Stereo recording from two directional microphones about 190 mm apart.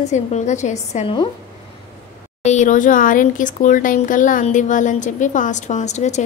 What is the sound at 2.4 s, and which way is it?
Speech, 40° left (ahead or behind).